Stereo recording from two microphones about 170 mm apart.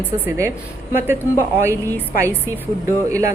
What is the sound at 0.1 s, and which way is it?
Speech, 15° right (ahead or behind).